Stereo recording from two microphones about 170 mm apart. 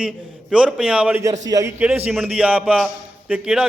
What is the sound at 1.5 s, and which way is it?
Speech, 20° right (ahead or behind).